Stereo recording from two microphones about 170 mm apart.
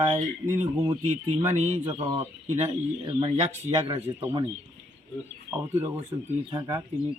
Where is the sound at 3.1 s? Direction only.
25° right (ahead or behind).